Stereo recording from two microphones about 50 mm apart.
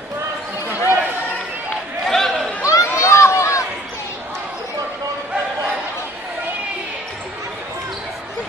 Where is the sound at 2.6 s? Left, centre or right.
Left.